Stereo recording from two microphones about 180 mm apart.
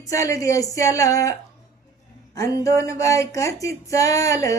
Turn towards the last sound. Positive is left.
turn(degrees=20)  # may be behind; listen again after turning